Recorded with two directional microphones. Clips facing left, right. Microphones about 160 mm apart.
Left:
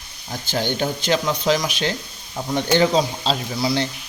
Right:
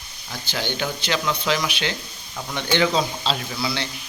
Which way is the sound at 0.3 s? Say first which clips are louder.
Left 5 dB; 45° left (ahead or behind).